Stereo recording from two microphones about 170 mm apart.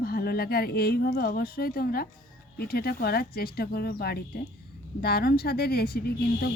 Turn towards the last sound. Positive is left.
turn(degrees=65)  # may be behind; listen again after turning